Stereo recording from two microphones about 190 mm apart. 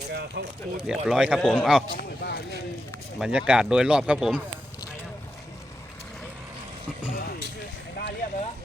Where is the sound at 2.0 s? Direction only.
55° left (ahead or behind).